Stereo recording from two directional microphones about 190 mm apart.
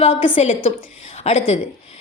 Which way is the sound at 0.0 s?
30° left (ahead or behind).